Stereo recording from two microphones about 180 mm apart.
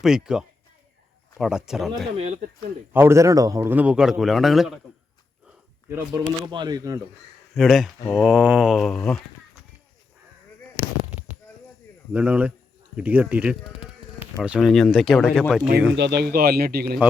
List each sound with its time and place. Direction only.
0.0 s speech: 5° right (ahead or behind)
2.1 s speech: 40° right (ahead or behind)
2.9 s a man's voice: 15° right (ahead or behind)
5.5 s a sound: 10° right (ahead or behind)
6.5 s speech: 25° right (ahead or behind)
7.5 s speech: centre (ahead or behind)
12.1 s a man's voice: 10° right (ahead or behind)
15.9 s speech: 70° right (ahead or behind)